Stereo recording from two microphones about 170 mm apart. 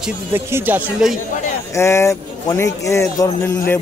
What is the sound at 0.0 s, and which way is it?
Speech, 15° right (ahead or behind).